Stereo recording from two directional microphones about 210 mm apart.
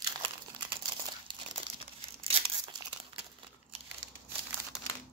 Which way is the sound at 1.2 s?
25° right (ahead or behind).